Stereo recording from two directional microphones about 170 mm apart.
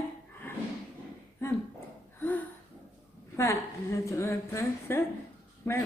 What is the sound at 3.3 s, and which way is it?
A woman's voice, 15° left (ahead or behind).